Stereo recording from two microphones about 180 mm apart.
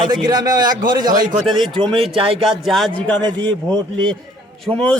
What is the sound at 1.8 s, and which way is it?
Speech, 30° right (ahead or behind).